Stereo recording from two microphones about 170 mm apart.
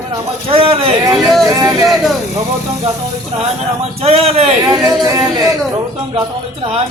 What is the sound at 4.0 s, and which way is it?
Speech, 35° right (ahead or behind).